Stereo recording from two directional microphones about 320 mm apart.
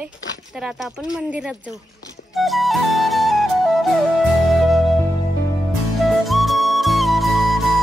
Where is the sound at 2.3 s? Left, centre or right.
Centre.